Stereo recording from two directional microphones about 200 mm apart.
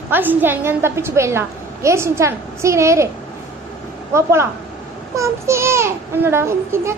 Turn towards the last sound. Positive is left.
turn(degrees=-15)  # may be behind; listen again after turning